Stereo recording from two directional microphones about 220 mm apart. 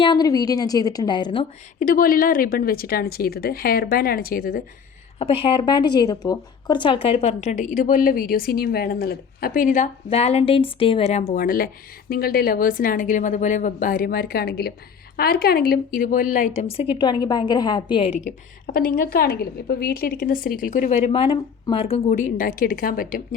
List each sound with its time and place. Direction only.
0.0 s a woman's voice: 20° left (ahead or behind)
1.8 s a woman's voice: 40° left (ahead or behind)
5.2 s a woman's voice: 25° left (ahead or behind)
16.6 s a woman's voice: 25° left (ahead or behind)
18.3 s a woman's voice: 40° left (ahead or behind)